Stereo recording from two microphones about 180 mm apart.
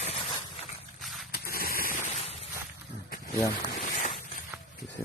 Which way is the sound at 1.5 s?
55° left (ahead or behind).